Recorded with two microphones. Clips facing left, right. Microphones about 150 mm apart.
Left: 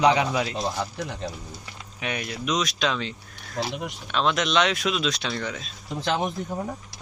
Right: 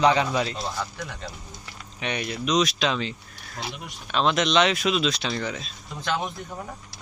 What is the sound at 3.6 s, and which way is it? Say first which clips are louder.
Speech: left 6 dB; 90° left.